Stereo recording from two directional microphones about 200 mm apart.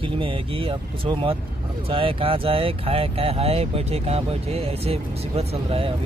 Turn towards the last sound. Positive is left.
turn(degrees=-30)  # may be behind; listen again after turning